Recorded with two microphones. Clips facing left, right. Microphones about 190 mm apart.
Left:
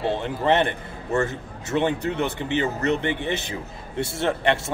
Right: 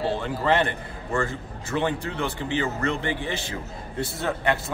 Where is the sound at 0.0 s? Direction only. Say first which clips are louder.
Left 2 dB; 20° left (ahead or behind).